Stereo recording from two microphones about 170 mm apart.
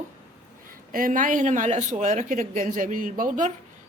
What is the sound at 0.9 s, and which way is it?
Speech, 55° right (ahead or behind).